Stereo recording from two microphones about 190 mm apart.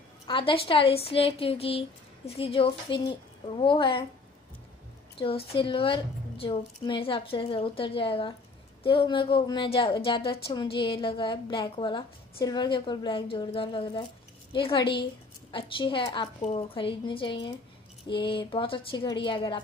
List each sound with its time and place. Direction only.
0.3 s a woman's voice: 25° left (ahead or behind)
5.2 s a woman's voice: 30° left (ahead or behind)